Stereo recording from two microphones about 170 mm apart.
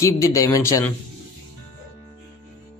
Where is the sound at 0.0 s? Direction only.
15° left (ahead or behind).